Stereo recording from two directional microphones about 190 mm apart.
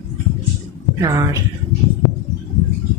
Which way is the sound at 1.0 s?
20° right (ahead or behind).